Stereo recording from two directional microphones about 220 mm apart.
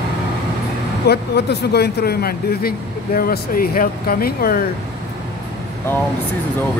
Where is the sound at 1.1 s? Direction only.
50° left (ahead or behind).